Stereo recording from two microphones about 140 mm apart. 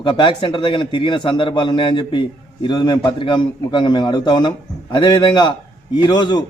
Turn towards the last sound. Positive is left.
turn(degrees=30)  # may be behind; listen again after turning